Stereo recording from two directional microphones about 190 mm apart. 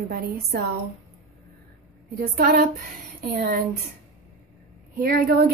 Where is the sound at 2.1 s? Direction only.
50° right (ahead or behind).